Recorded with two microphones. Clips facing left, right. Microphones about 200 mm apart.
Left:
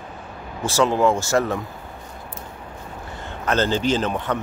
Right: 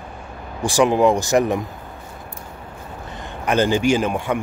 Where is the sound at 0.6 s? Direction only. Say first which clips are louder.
Right 3 dB; 15° right (ahead or behind).